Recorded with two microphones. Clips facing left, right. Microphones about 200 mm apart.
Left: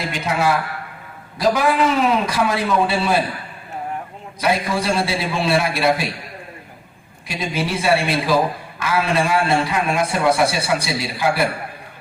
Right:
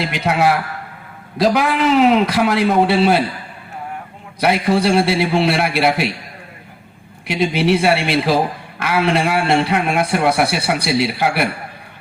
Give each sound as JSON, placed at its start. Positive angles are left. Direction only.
{"t": 0.0, "sound": "a man's voice", "side_deg": -70}
{"t": 4.4, "sound": "a man's voice", "side_deg": -65}
{"t": 7.3, "sound": "a man's voice", "side_deg": -65}